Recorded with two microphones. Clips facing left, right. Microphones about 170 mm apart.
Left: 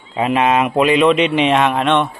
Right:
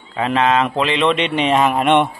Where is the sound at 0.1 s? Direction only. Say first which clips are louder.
Left 1 dB; 15° left (ahead or behind); by 1.9 s centre (ahead or behind).